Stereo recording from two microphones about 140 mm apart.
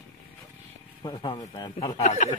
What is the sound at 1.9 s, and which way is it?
Speech, 50° left (ahead or behind).